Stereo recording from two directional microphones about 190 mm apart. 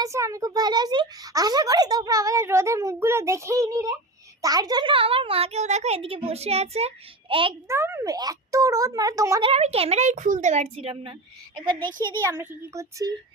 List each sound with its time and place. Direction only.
0.0 s a child's voice: 15° right (ahead or behind)
7.7 s a child's voice: 15° right (ahead or behind)
9.4 s speech: 35° right (ahead or behind)
11.5 s a child's voice: 5° left (ahead or behind)
12.3 s a child's voice: 15° right (ahead or behind)